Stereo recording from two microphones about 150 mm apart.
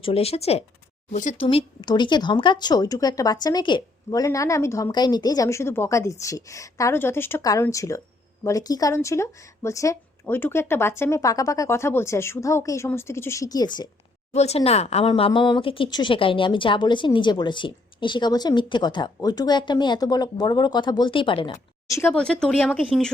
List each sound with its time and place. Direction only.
0.0 s speech: 40° left (ahead or behind)
1.1 s speech: 55° left (ahead or behind)
1.4 s speech: 40° left (ahead or behind)
14.3 s a woman's voice: 45° left (ahead or behind)
21.8 s speech: 20° left (ahead or behind)
22.1 s speech: 5° left (ahead or behind)